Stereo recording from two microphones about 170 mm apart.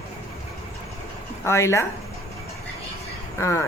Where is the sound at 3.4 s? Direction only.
15° left (ahead or behind).